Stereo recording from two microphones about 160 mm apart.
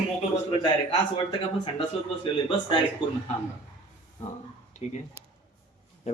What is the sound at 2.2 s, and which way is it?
Speech, 30° left (ahead or behind).